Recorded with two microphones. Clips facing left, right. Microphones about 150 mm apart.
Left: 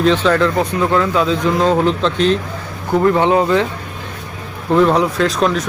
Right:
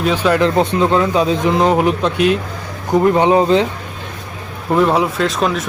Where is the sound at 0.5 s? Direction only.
25° right (ahead or behind).